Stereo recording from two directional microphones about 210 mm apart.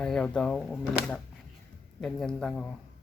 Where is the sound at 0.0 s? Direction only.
5° left (ahead or behind).